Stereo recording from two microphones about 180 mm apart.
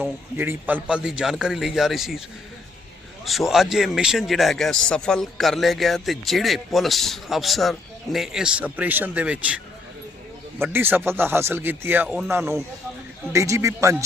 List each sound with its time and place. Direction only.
0.0 s a man's voice: 10° right (ahead or behind)
3.5 s a man's voice: centre (ahead or behind)
10.6 s speech: 10° right (ahead or behind)